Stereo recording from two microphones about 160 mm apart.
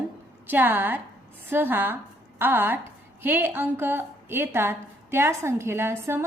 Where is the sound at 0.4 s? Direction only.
10° right (ahead or behind).